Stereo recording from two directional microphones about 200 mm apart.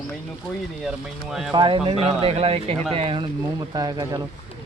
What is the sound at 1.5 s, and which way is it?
Speech, 25° right (ahead or behind).